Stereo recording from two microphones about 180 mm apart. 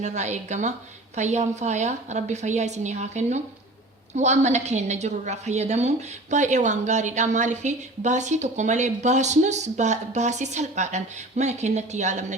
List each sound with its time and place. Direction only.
0.0 s a woman's voice: 40° right (ahead or behind)